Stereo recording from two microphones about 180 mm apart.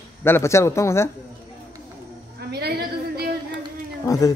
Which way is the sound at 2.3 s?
60° right (ahead or behind).